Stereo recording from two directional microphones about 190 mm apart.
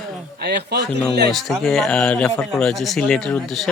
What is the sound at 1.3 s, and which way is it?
A man's voice, centre (ahead or behind).